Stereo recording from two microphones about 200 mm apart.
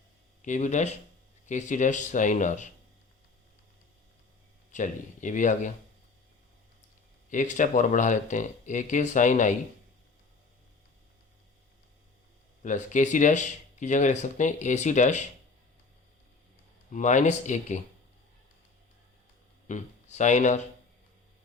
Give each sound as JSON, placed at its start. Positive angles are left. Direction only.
{"t": 0.4, "sound": "speech", "side_deg": 35}
{"t": 4.7, "sound": "speech", "side_deg": 40}
{"t": 7.3, "sound": "speech", "side_deg": 40}
{"t": 12.6, "sound": "speech", "side_deg": 40}
{"t": 16.9, "sound": "speech", "side_deg": 35}
{"t": 19.6, "sound": "speech", "side_deg": 35}